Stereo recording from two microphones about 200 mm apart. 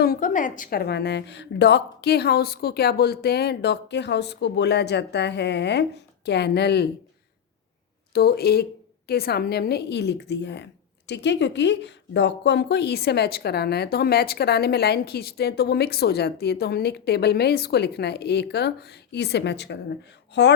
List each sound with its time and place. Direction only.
0.0 s a woman's voice: 45° left (ahead or behind)
8.1 s a woman's voice: 50° left (ahead or behind)